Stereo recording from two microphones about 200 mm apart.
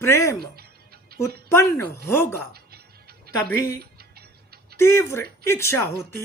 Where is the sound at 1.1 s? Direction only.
50° right (ahead or behind).